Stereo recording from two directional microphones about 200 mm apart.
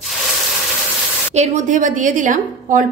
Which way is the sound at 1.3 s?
35° right (ahead or behind).